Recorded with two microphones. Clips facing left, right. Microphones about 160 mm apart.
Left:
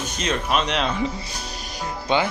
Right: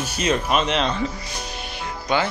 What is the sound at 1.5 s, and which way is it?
Music, 40° left (ahead or behind).